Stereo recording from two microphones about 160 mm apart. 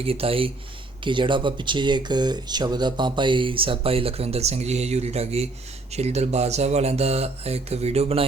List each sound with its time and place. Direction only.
0.0 s speech: 35° right (ahead or behind)